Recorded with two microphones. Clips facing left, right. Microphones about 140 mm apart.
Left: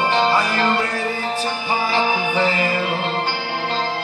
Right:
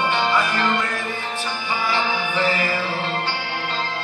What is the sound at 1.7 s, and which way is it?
Music, 40° left (ahead or behind).